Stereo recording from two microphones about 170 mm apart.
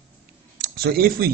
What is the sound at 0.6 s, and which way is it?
Speech, 65° right (ahead or behind).